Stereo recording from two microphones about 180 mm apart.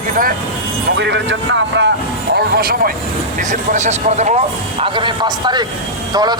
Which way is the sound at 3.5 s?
40° right (ahead or behind).